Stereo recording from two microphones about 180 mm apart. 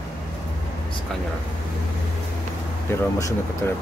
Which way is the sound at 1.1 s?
5° left (ahead or behind).